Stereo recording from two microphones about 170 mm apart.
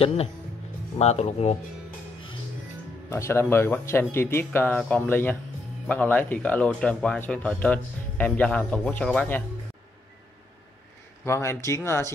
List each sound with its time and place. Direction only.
0.0 s speech: 35° left (ahead or behind)
3.1 s speech: 15° left (ahead or behind)
11.2 s speech: 15° left (ahead or behind)